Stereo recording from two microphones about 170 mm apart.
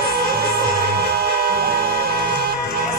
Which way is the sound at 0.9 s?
70° right (ahead or behind).